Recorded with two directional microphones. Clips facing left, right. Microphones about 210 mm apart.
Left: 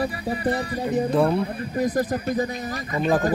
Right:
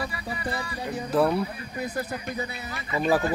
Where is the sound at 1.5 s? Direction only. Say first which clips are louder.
Left 8 dB; 45° left (ahead or behind).